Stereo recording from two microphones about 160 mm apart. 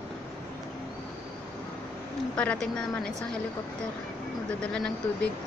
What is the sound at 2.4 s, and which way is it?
A woman's voice, 5° left (ahead or behind).